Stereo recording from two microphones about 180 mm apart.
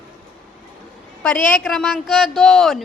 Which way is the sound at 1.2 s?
5° left (ahead or behind).